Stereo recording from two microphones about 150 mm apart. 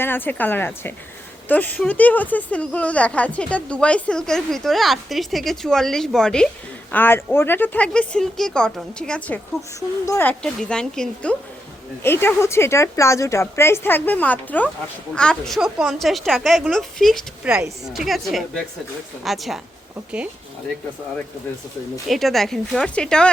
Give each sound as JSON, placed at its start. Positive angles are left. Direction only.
{"t": 0.0, "sound": "a woman's voice", "side_deg": 15}
{"t": 22.0, "sound": "speech", "side_deg": 0}